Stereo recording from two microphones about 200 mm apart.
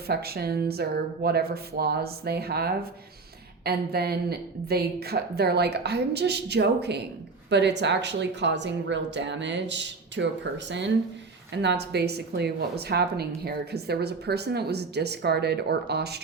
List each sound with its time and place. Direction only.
0.1 s a woman's voice: 50° right (ahead or behind)